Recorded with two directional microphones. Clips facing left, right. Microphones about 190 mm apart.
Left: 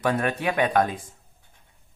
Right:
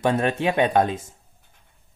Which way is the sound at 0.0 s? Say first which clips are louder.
Right 3 dB; 25° right (ahead or behind).